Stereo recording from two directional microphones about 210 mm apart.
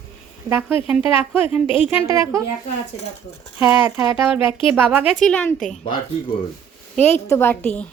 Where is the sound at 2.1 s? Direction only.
15° right (ahead or behind).